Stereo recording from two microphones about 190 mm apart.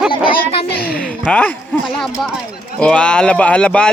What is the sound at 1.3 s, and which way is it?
Speech, 5° left (ahead or behind).